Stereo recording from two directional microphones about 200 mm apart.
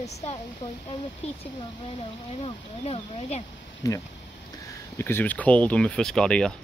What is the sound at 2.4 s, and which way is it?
Speech, 30° left (ahead or behind).